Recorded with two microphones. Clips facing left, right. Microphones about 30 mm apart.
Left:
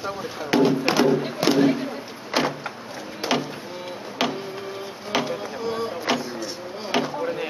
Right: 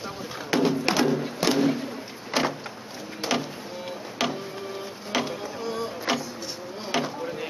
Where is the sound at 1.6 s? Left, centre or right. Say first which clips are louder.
Left 4 dB; left.